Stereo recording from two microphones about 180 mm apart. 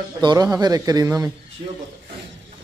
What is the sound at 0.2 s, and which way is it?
A man's voice, 20° right (ahead or behind).